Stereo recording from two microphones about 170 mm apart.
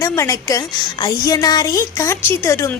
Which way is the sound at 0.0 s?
20° left (ahead or behind).